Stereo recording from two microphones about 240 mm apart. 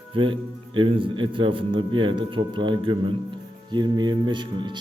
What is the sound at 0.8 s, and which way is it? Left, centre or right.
A man's voice, right.